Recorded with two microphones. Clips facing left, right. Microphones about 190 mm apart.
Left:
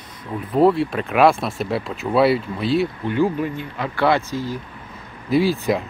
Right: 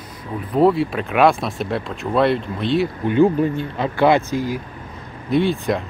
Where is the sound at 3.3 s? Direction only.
30° right (ahead or behind).